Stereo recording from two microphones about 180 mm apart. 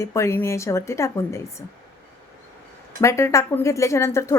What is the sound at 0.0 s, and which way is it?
A woman's voice, 15° left (ahead or behind).